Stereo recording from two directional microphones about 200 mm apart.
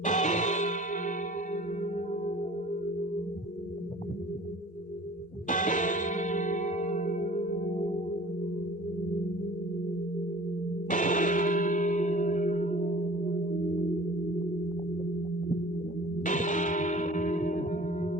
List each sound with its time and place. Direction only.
0.0 s music: 40° left (ahead or behind)
5.5 s music: 40° left (ahead or behind)
10.8 s gong: 40° left (ahead or behind)
16.2 s music: 40° left (ahead or behind)